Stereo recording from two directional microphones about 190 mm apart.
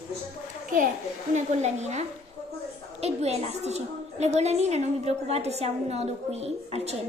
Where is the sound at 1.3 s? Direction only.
35° right (ahead or behind).